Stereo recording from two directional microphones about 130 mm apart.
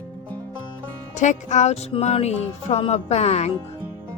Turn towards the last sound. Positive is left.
turn(degrees=55)  # may be behind; listen again after turning